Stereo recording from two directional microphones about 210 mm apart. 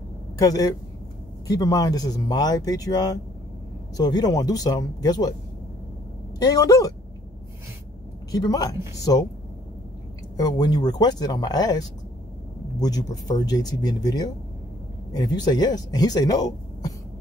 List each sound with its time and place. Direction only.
0.4 s speech: 15° left (ahead or behind)
6.4 s speech: 15° left (ahead or behind)
8.3 s speech: 20° left (ahead or behind)
10.3 s speech: 20° left (ahead or behind)
12.8 s speech: 20° left (ahead or behind)